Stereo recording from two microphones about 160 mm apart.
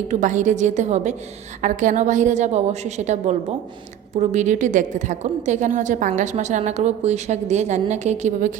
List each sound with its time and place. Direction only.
0.1 s a woman's voice: 50° right (ahead or behind)